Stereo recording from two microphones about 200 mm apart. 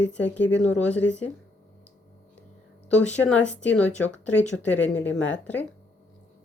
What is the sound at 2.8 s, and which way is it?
Speech, 5° left (ahead or behind).